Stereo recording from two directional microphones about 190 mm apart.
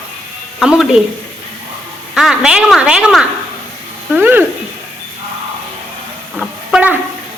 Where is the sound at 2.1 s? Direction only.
5° right (ahead or behind).